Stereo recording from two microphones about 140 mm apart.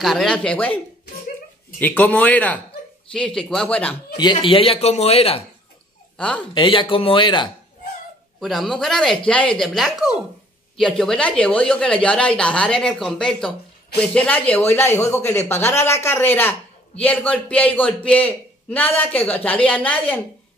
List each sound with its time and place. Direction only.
0.0 s speech: centre (ahead or behind)
1.8 s speech: 10° left (ahead or behind)
4.2 s a man's voice: 35° left (ahead or behind)
6.1 s speech: 10° left (ahead or behind)
6.5 s speech: 35° left (ahead or behind)
8.4 s speech: centre (ahead or behind)